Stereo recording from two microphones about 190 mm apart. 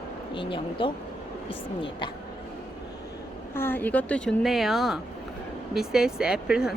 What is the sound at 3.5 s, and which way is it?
Speech, 10° left (ahead or behind).